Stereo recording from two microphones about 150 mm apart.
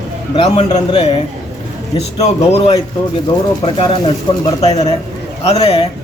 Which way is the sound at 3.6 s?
30° left (ahead or behind).